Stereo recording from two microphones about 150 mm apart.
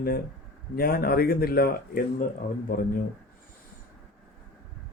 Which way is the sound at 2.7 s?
70° left (ahead or behind).